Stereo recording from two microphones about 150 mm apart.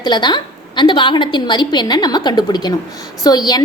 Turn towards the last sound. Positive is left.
turn(degrees=25)  # may be behind; listen again after turning